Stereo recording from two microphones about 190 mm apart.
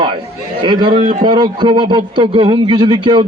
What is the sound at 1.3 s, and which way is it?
A man's voice, 25° right (ahead or behind).